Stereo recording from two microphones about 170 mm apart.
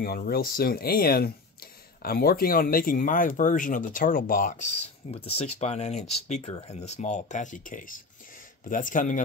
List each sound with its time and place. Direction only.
0.0 s speech: 60° left (ahead or behind)
5.1 s speech: 35° left (ahead or behind)